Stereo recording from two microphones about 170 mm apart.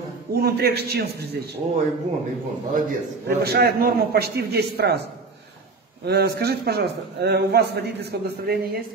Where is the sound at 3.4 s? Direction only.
70° right (ahead or behind).